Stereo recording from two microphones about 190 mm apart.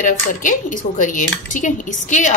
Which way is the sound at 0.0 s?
45° left (ahead or behind).